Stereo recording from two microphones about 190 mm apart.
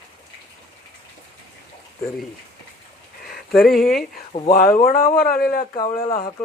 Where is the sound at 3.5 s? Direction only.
Centre (ahead or behind).